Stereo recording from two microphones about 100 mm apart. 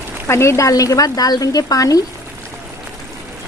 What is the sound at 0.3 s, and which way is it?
Speech, 25° left (ahead or behind).